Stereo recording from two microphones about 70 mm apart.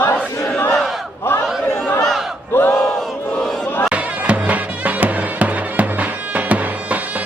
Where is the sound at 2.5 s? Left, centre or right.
Left.